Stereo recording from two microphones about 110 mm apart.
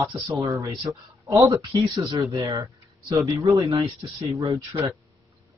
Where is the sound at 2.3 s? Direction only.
30° right (ahead or behind).